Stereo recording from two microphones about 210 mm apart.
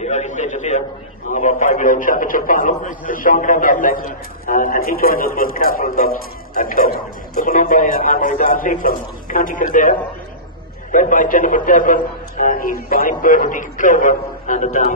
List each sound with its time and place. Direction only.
0.0 s a man's voice: 35° left (ahead or behind)